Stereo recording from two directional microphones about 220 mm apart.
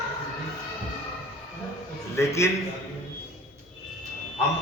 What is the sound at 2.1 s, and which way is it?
Speech, 10° left (ahead or behind).